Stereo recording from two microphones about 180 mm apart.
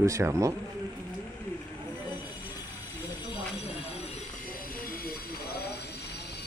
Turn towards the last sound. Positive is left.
turn(degrees=60)  # may be behind; listen again after turning